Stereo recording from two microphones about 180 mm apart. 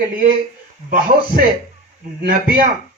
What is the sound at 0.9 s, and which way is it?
Speech, 55° right (ahead or behind).